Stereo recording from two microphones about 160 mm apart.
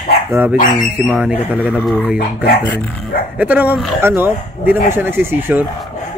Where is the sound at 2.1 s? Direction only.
75° left (ahead or behind).